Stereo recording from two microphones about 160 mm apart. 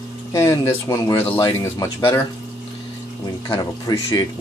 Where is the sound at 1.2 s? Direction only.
30° left (ahead or behind).